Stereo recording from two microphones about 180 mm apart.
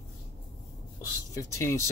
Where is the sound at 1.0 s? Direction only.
15° left (ahead or behind).